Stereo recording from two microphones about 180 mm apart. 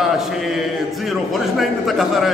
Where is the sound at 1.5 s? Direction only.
Centre (ahead or behind).